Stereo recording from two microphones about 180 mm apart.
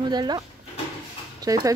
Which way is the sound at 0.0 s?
25° right (ahead or behind).